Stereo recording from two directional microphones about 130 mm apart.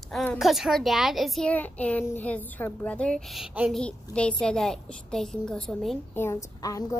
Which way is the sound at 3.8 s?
10° left (ahead or behind).